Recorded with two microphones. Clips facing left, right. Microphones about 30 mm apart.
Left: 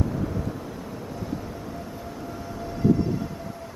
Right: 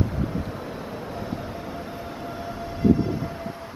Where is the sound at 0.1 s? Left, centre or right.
Right.